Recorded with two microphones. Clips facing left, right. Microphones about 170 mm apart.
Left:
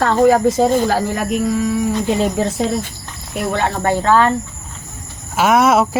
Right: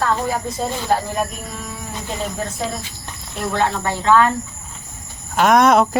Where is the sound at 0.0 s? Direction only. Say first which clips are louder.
Left 9 dB; 80° left.